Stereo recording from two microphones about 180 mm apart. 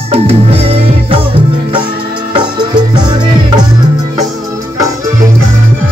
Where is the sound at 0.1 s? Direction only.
35° right (ahead or behind).